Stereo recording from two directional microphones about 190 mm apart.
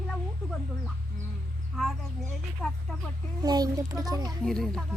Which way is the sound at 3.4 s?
20° right (ahead or behind).